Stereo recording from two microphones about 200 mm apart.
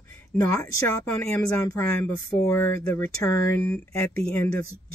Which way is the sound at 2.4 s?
10° left (ahead or behind).